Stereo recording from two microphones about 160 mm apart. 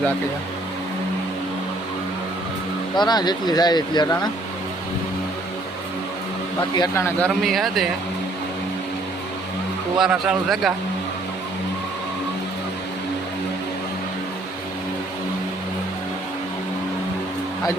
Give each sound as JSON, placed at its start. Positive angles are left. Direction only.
{"t": 2.9, "sound": "speech", "side_deg": 25}
{"t": 6.6, "sound": "speech", "side_deg": 25}
{"t": 7.3, "sound": "speech", "side_deg": 0}
{"t": 10.0, "sound": "speech", "side_deg": -5}